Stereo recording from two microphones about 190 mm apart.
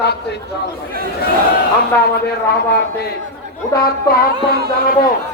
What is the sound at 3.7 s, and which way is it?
Speech, 55° left (ahead or behind).